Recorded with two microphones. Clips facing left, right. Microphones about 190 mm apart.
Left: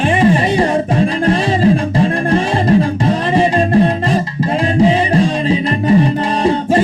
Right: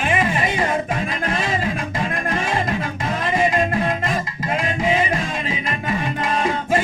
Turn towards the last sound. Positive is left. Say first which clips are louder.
# left 7 dB
turn(degrees=30)  # may be behind; listen again after turning